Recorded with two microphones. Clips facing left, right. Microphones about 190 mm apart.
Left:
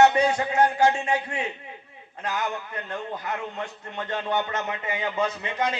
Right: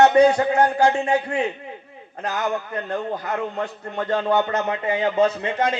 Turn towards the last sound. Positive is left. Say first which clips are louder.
# right 6 dB
turn(degrees=-55)  # may be behind; listen again after turning